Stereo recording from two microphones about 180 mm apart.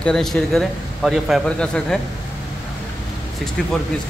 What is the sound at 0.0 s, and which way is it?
A man's voice, centre (ahead or behind).